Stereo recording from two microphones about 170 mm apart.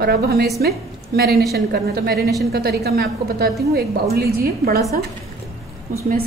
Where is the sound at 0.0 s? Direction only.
70° right (ahead or behind).